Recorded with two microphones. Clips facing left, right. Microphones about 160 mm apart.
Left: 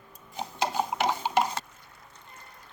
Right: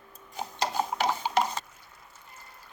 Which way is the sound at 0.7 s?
10° left (ahead or behind).